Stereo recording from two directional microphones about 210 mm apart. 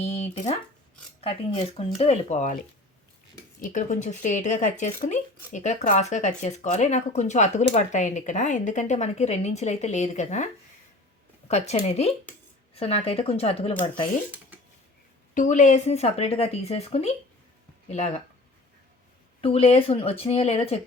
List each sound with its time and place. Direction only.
0.0 s speech: 30° left (ahead or behind)
15.4 s speech: 35° left (ahead or behind)
19.4 s speech: 25° left (ahead or behind)